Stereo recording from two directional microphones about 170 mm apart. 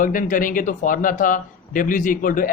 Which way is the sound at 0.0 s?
50° left (ahead or behind).